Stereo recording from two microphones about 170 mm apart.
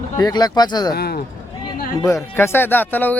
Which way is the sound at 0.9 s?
65° left (ahead or behind).